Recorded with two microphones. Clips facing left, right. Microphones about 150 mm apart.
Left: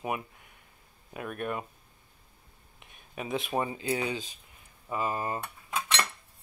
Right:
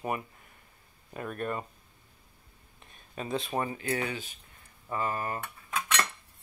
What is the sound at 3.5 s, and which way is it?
Cutlery, 15° left (ahead or behind).